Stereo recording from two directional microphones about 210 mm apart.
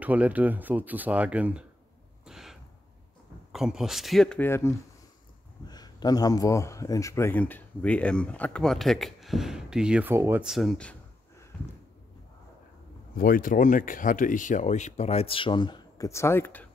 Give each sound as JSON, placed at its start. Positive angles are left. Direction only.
{"t": 0.0, "sound": "speech", "side_deg": -5}
{"t": 2.2, "sound": "gasp", "side_deg": 0}
{"t": 3.5, "sound": "speech", "side_deg": 0}
{"t": 13.1, "sound": "speech", "side_deg": 40}